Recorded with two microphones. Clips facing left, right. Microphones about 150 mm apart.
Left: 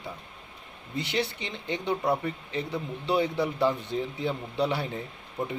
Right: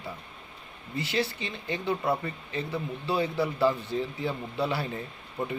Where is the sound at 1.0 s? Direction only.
20° left (ahead or behind).